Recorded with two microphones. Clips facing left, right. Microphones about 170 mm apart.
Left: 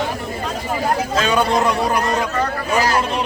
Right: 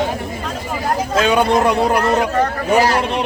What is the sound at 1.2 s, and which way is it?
A man's voice, 60° right (ahead or behind).